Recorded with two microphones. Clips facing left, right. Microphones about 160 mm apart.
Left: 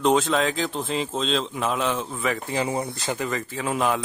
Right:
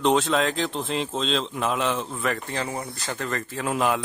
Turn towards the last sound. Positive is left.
turn(degrees=0)  # may be behind; listen again after turning